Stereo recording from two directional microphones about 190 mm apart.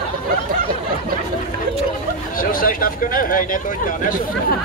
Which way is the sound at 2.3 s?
50° left (ahead or behind).